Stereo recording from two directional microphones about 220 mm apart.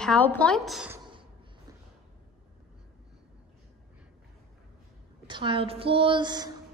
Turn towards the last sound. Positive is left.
turn(degrees=-20)  # may be behind; listen again after turning